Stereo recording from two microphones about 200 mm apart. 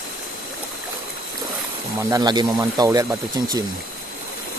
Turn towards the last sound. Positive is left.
turn(degrees=-15)  # may be behind; listen again after turning